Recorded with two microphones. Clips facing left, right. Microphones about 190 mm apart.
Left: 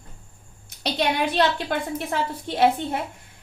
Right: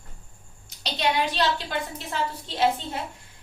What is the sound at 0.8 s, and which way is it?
A woman's voice, 55° left (ahead or behind).